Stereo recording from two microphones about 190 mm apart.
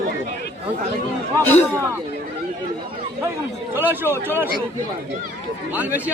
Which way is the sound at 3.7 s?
10° right (ahead or behind).